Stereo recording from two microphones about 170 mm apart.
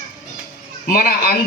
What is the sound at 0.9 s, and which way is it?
Speech, 55° left (ahead or behind).